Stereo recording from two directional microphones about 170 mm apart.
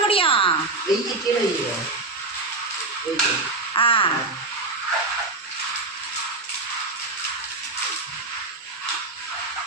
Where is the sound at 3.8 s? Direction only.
30° left (ahead or behind).